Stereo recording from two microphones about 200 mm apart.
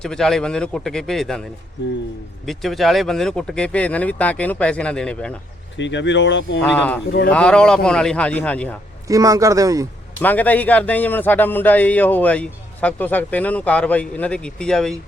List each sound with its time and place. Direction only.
0.0 s speech: 5° left (ahead or behind)
2.5 s speech: centre (ahead or behind)
5.7 s speech: 65° left (ahead or behind)
6.6 s a man's voice: 5° left (ahead or behind)
9.0 s speech: 15° right (ahead or behind)
10.2 s a man's voice: 10° left (ahead or behind)